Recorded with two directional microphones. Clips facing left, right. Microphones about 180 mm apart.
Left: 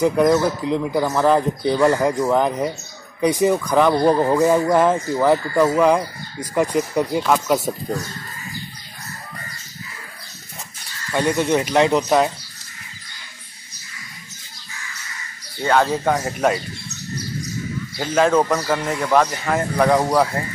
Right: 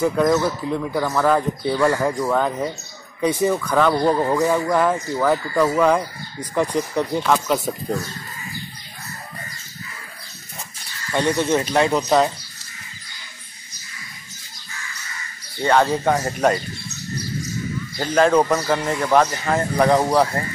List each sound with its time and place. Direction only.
0.0 s speech: 15° left (ahead or behind)
11.1 s speech: 10° left (ahead or behind)
15.6 s speech: centre (ahead or behind)
17.9 s speech: 5° left (ahead or behind)